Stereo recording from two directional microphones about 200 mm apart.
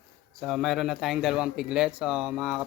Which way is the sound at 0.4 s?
Centre (ahead or behind).